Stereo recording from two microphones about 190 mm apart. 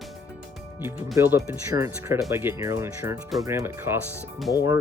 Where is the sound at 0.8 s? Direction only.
10° right (ahead or behind).